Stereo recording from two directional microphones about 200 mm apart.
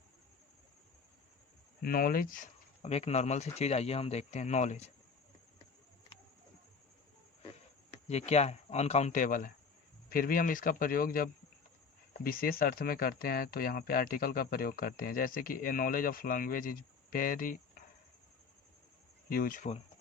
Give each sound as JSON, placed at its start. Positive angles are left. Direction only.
{"t": 1.8, "sound": "speech", "side_deg": 45}
{"t": 8.3, "sound": "speech", "side_deg": 35}
{"t": 19.3, "sound": "speech", "side_deg": 45}